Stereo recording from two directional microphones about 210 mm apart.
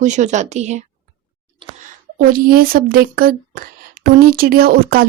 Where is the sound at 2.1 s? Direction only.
40° right (ahead or behind).